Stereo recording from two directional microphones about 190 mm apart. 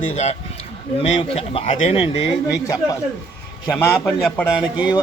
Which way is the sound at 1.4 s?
30° left (ahead or behind).